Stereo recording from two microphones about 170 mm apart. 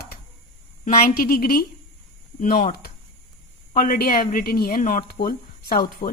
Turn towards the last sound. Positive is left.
turn(degrees=50)  # may be behind; listen again after turning